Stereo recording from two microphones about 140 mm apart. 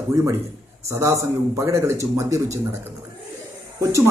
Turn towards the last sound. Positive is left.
turn(degrees=-20)  # may be behind; listen again after turning